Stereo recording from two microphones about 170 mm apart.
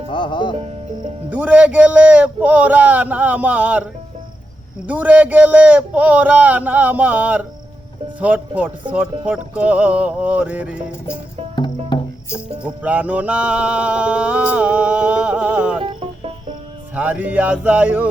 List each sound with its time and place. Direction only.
0.1 s music: 25° left (ahead or behind)
1.3 s mantra: 10° right (ahead or behind)
4.9 s mantra: 10° right (ahead or behind)
12.6 s mantra: 10° right (ahead or behind)
15.8 s music: 30° right (ahead or behind)
16.9 s mantra: 10° right (ahead or behind)